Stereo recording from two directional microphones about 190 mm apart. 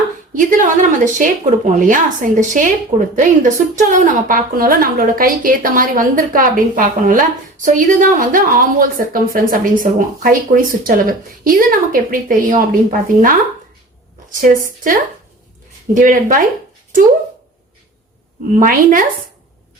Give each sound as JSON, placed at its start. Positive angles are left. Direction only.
{"t": 0.3, "sound": "a woman's voice", "side_deg": -40}
{"t": 16.0, "sound": "a woman's voice", "side_deg": -45}
{"t": 18.6, "sound": "a woman's voice", "side_deg": -45}